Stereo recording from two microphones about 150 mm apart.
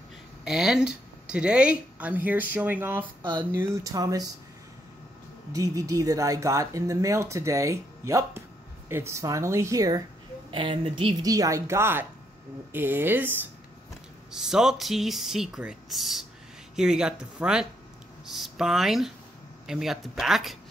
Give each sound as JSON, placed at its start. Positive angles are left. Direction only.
{"t": 0.5, "sound": "speech", "side_deg": -5}
{"t": 3.2, "sound": "speech", "side_deg": -30}
{"t": 5.5, "sound": "speech", "side_deg": -20}
{"t": 10.5, "sound": "speech", "side_deg": -35}
{"t": 14.3, "sound": "speech", "side_deg": -5}